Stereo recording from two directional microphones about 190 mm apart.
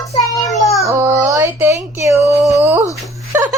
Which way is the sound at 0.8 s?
15° right (ahead or behind).